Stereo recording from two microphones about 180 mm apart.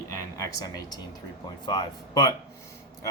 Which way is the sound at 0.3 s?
20° left (ahead or behind).